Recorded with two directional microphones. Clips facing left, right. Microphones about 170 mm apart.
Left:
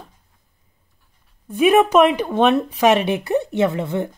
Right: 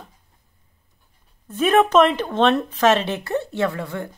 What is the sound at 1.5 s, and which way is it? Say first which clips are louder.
A woman's voice: left 2 dB; 10° left (ahead or behind).